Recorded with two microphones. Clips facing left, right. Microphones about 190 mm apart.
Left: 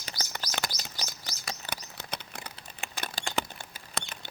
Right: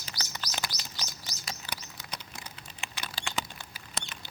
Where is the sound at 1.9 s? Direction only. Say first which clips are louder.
Left 3 dB; 65° left (ahead or behind); by 3.3 s 45° left (ahead or behind).